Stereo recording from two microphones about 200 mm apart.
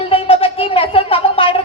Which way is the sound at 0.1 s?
25° left (ahead or behind).